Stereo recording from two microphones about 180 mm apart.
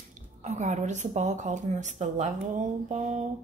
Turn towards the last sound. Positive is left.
turn(degrees=-40)  # may be behind; listen again after turning